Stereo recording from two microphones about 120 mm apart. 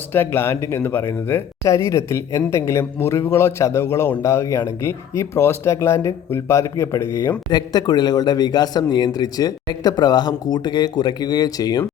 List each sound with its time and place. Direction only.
0.1 s speech: 20° left (ahead or behind)